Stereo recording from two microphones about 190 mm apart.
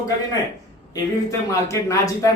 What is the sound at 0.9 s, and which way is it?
Speech, 15° left (ahead or behind).